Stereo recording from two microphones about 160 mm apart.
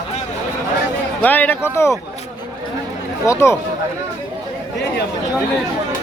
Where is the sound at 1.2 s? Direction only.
10° left (ahead or behind).